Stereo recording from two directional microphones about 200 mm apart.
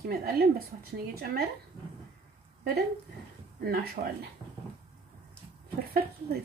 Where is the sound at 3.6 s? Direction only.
50° right (ahead or behind).